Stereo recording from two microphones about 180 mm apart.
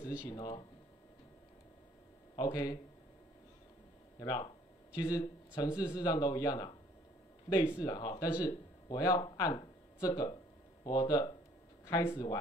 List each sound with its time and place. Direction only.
0.3 s speech: 20° left (ahead or behind)
2.3 s speech: 20° left (ahead or behind)
4.2 s speech: 20° left (ahead or behind)
11.8 s a sound: 15° left (ahead or behind)
12.1 s speech: 25° left (ahead or behind)